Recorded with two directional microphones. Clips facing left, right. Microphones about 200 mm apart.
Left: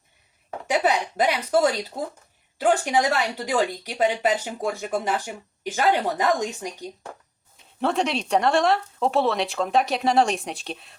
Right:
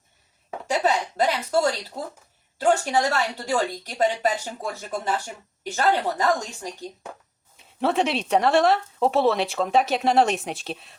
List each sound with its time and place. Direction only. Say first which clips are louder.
0.7 s speech: left 1 dB; 15° left (ahead or behind)
2.6 s a woman's voice: even; 15° left (ahead or behind)
7.8 s speech: right 1 dB; centre (ahead or behind)